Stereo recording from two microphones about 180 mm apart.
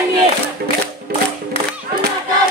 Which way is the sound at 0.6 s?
60° right (ahead or behind).